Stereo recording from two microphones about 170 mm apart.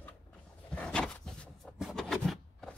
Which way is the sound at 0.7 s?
5° left (ahead or behind).